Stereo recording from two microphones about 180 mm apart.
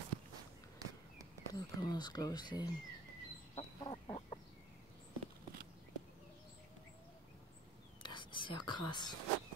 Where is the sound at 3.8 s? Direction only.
30° left (ahead or behind).